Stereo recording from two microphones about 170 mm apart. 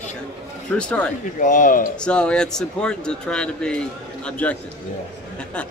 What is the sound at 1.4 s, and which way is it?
Speech, 50° left (ahead or behind).